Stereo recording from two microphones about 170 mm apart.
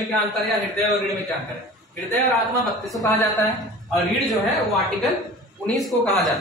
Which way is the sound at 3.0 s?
20° left (ahead or behind).